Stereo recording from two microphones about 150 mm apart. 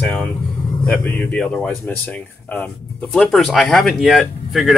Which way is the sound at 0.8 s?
10° left (ahead or behind).